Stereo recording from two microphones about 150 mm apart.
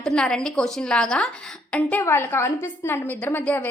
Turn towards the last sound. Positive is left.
turn(degrees=10)  # may be behind; listen again after turning